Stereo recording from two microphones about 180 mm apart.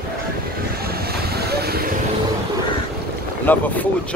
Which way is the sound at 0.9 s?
60° right (ahead or behind).